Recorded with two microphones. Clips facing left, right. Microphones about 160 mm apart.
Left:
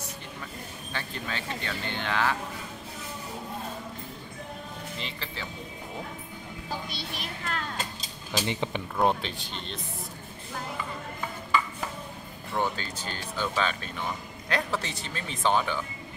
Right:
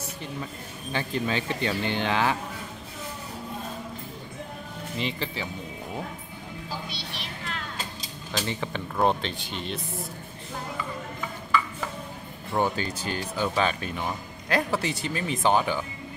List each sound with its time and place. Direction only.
0.9 s speech: 15° right (ahead or behind)
4.9 s speech: 15° right (ahead or behind)
6.9 s vehicle: 45° left (ahead or behind)
8.3 s speech: 15° left (ahead or behind)
8.9 s speech: centre (ahead or behind)
12.5 s speech: 15° right (ahead or behind)